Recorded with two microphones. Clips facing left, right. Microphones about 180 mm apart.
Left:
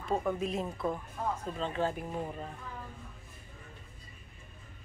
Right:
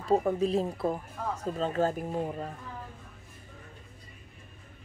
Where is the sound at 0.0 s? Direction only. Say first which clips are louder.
Right 6 dB; 35° right (ahead or behind).